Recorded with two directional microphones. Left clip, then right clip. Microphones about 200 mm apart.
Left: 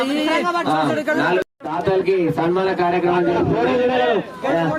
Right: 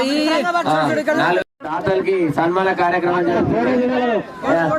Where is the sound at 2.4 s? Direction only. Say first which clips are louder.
Right 2 dB; 40° right (ahead or behind).